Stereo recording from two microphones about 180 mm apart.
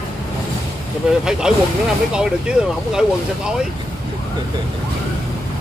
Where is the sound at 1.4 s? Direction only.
5° right (ahead or behind).